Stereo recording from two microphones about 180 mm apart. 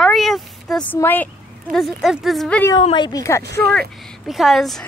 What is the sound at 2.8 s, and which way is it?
Speech, 25° left (ahead or behind).